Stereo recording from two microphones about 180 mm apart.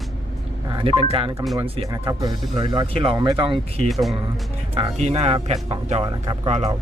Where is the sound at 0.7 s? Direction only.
30° right (ahead or behind).